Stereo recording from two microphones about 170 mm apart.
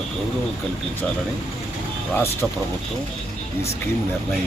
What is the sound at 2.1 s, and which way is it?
Speech, 15° left (ahead or behind).